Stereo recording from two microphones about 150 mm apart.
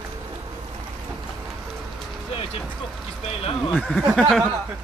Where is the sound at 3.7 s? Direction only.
Centre (ahead or behind).